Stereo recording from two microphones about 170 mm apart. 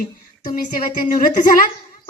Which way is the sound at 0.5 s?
55° left (ahead or behind).